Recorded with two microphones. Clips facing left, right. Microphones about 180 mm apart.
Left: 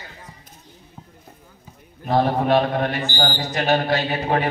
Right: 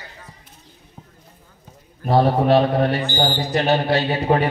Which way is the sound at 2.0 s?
30° right (ahead or behind).